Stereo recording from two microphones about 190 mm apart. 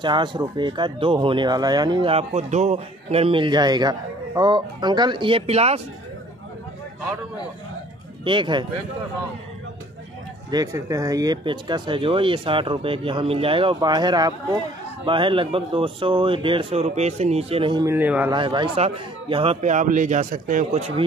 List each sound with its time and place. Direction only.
0.0 s speech: 25° right (ahead or behind)
8.2 s speech: 25° right (ahead or behind)
10.5 s speech: 20° right (ahead or behind)
17.8 s a man's voice: 10° right (ahead or behind)
18.3 s a man's voice: 25° right (ahead or behind)